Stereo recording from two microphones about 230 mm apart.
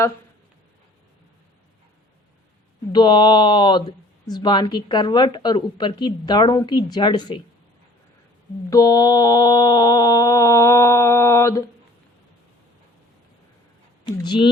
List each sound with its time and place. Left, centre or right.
2.9 s speech: centre
8.7 s a sound: centre
14.0 s speech: left